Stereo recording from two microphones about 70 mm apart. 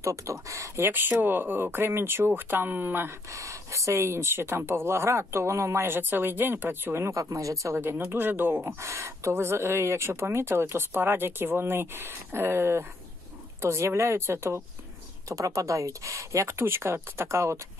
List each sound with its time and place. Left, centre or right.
0.0 s speech: right
0.8 s speech: right
3.3 s speech: right
5.9 s speech: right
7.2 s speech: right
7.7 s speech: right
15.2 s speech: right